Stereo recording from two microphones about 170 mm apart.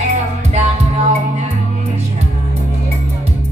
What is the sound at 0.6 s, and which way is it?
Music, 40° right (ahead or behind).